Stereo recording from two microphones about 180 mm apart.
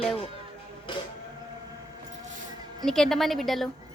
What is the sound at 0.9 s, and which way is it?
Sheep, 25° left (ahead or behind).